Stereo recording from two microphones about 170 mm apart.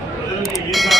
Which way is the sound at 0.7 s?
Centre (ahead or behind).